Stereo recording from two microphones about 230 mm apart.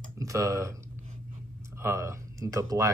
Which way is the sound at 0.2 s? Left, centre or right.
Centre.